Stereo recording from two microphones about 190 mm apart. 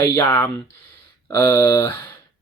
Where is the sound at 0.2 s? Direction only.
15° left (ahead or behind).